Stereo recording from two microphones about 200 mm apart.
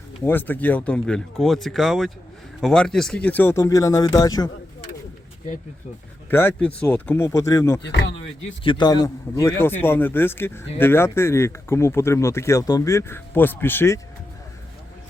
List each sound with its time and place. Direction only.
0.3 s a man's voice: 10° left (ahead or behind)
6.3 s a man's voice: 10° left (ahead or behind)
7.9 s speech: 65° left (ahead or behind)
8.6 s a man's voice: 20° left (ahead or behind)